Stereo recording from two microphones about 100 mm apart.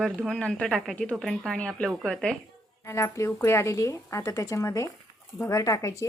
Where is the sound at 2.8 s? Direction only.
30° left (ahead or behind).